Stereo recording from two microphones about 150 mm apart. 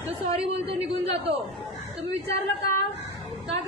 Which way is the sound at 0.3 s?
40° right (ahead or behind).